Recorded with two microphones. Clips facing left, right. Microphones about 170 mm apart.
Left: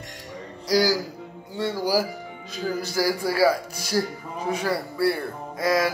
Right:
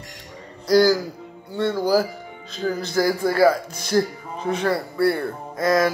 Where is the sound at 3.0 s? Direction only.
55° right (ahead or behind).